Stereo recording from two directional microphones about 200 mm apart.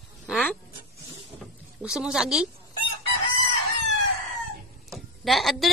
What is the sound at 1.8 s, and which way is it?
Speech, 5° right (ahead or behind).